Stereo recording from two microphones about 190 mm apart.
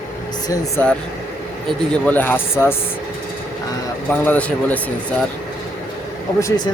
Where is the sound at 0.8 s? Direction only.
10° left (ahead or behind).